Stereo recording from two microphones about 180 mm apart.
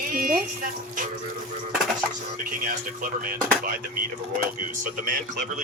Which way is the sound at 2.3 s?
50° right (ahead or behind).